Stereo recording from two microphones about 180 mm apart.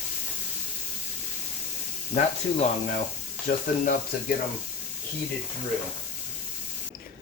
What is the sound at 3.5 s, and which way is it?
Speech, 45° left (ahead or behind).